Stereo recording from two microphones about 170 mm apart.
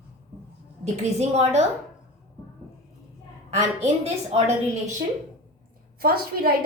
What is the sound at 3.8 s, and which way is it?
Speech, 40° right (ahead or behind).